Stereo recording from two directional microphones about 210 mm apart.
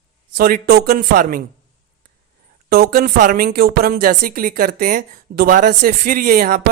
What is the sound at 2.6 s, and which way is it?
A woman's voice, 45° right (ahead or behind).